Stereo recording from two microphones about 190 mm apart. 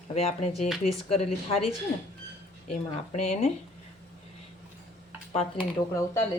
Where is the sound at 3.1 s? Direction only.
35° left (ahead or behind).